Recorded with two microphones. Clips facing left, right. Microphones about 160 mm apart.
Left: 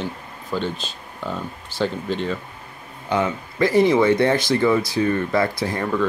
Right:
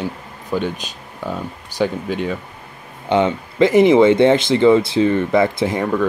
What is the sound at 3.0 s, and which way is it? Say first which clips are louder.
Speech: right 5 dB; 25° right (ahead or behind).